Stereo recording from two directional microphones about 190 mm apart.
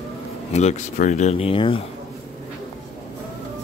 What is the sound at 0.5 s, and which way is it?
Speech, 35° left (ahead or behind).